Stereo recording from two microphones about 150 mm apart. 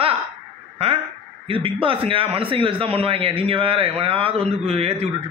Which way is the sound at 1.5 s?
35° right (ahead or behind).